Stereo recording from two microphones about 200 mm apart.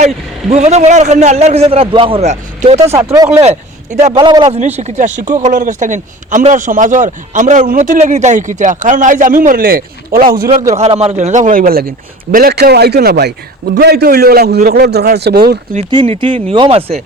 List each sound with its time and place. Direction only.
0.5 s speech: 35° right (ahead or behind)
2.8 s speech: 15° right (ahead or behind)
4.4 s speech: 35° right (ahead or behind)
10.8 s a man's voice: 30° right (ahead or behind); by 15.5 s 50° right (ahead or behind)
15.9 s speech: 25° right (ahead or behind)